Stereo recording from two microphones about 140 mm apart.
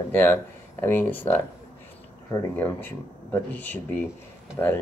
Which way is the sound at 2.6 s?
15° left (ahead or behind).